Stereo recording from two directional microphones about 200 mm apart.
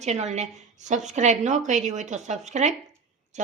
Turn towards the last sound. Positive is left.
turn(degrees=-35)  # may be behind; listen again after turning